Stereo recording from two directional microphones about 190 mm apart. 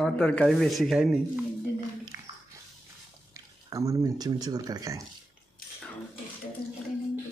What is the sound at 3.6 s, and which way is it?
Speech, 15° right (ahead or behind).